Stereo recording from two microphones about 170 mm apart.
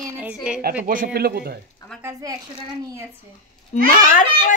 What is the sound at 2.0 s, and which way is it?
Speech, 15° right (ahead or behind).